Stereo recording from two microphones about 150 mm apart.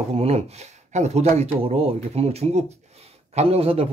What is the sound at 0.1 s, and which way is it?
A man's voice, 45° right (ahead or behind).